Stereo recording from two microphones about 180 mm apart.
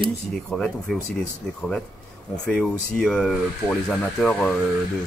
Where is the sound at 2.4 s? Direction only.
5° left (ahead or behind).